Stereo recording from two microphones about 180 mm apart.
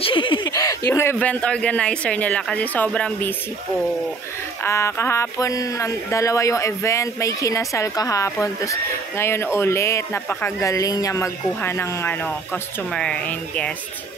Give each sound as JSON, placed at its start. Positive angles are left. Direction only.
{"t": 0.0, "sound": "speech", "side_deg": 30}
{"t": 4.6, "sound": "speech", "side_deg": 15}